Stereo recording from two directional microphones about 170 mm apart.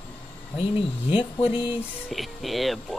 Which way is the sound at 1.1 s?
35° left (ahead or behind).